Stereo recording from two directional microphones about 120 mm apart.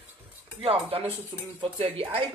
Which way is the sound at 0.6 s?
55° right (ahead or behind).